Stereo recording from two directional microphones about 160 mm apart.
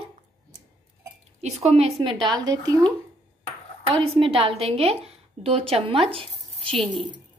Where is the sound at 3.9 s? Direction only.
35° right (ahead or behind).